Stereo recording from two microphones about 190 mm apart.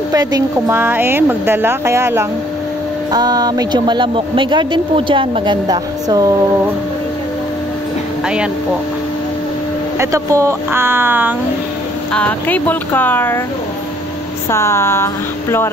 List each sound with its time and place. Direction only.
0.1 s speech: 20° right (ahead or behind)
9.9 s speech: 15° right (ahead or behind)
12.1 s speech: 5° left (ahead or behind)
14.5 s speech: 15° left (ahead or behind)